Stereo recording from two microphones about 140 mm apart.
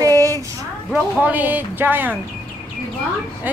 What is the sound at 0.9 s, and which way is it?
Speech, 10° right (ahead or behind).